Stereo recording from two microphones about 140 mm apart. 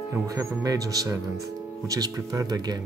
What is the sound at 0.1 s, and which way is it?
Speech, 25° right (ahead or behind).